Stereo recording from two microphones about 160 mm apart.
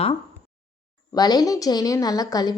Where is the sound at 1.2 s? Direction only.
25° left (ahead or behind).